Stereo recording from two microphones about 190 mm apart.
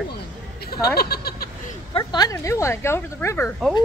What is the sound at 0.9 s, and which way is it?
Speech, 55° left (ahead or behind).